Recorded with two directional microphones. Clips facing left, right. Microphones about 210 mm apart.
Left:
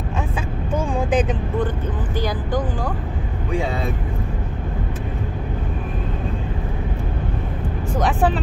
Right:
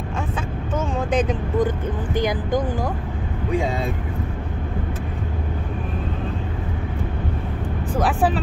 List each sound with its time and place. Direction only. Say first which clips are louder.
0.7 s vehicle: left 2 dB; 10° left (ahead or behind)
2.1 s speech: right 2 dB; 15° right (ahead or behind)
8.0 s speech: left 1 dB; 5° right (ahead or behind)